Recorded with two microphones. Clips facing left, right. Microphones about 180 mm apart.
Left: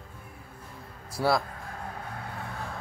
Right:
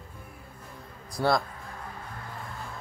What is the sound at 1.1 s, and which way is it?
Speech, 5° left (ahead or behind).